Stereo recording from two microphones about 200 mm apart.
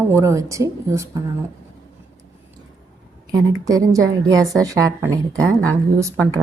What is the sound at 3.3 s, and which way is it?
A woman's voice, 15° right (ahead or behind).